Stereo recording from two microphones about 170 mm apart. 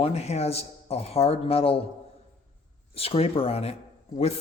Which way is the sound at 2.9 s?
35° left (ahead or behind).